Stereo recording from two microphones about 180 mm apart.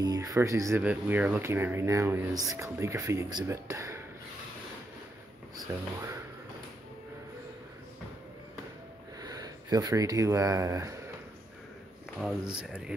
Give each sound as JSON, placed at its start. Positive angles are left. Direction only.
{"t": 0.0, "sound": "speech", "side_deg": -20}
{"t": 5.7, "sound": "speech", "side_deg": -10}
{"t": 9.2, "sound": "speech", "side_deg": -20}
{"t": 12.2, "sound": "speech", "side_deg": -5}